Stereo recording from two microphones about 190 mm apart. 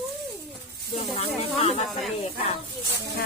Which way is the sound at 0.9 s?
35° left (ahead or behind).